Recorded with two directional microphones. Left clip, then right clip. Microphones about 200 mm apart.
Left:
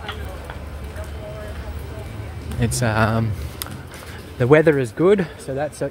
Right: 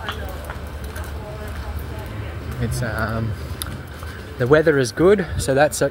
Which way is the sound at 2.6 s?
30° left (ahead or behind).